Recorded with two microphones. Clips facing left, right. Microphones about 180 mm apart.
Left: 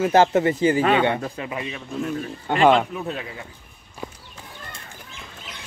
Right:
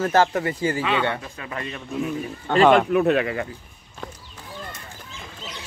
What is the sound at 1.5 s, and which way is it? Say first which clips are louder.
Speech: left 1 dB; 5° left (ahead or behind).